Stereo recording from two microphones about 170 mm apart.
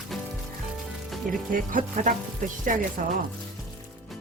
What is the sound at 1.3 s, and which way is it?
Speech, 55° right (ahead or behind).